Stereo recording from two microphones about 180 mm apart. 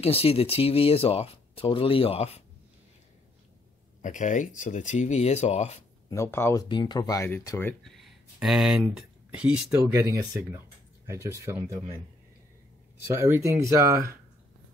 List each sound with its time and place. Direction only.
0.0 s speech: 35° left (ahead or behind)
4.0 s speech: 45° left (ahead or behind)
6.0 s speech: 15° left (ahead or behind)
7.8 s speech: centre (ahead or behind)
13.0 s speech: 15° right (ahead or behind)